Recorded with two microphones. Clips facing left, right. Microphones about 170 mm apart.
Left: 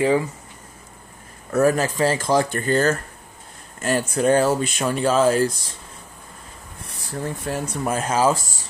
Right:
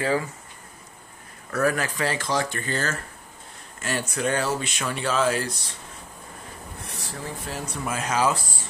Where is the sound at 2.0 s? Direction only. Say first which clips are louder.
Left 7 dB; 45° left (ahead or behind).